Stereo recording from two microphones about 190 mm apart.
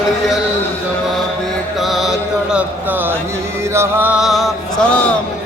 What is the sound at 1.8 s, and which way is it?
Mantra, centre (ahead or behind).